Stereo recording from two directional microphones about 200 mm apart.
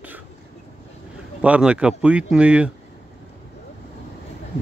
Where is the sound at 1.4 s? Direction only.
5° right (ahead or behind).